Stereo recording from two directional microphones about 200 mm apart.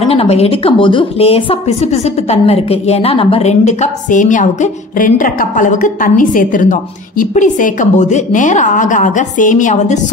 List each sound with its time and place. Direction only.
0.1 s a woman's voice: 30° left (ahead or behind)